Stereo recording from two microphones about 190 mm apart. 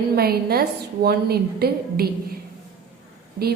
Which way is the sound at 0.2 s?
55° right (ahead or behind).